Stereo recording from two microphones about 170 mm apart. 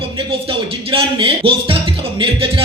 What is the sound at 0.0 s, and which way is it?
Music, 30° right (ahead or behind).